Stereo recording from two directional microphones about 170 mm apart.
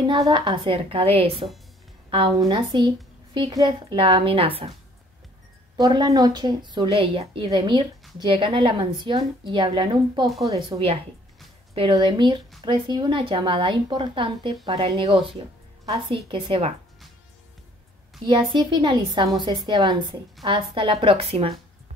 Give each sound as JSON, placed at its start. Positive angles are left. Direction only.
{"t": 0.0, "sound": "a woman's voice", "side_deg": -30}
{"t": 5.8, "sound": "a woman's voice", "side_deg": -25}
{"t": 18.2, "sound": "a woman's voice", "side_deg": -25}